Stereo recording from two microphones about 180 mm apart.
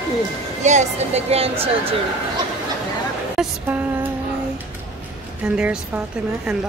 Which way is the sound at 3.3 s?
10° right (ahead or behind).